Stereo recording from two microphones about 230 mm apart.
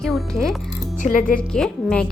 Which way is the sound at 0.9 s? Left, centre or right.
Left.